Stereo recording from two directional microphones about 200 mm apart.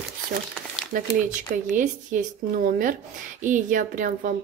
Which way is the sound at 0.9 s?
45° right (ahead or behind).